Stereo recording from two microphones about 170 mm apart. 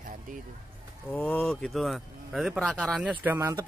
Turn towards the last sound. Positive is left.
turn(degrees=-15)  # may be behind; listen again after turning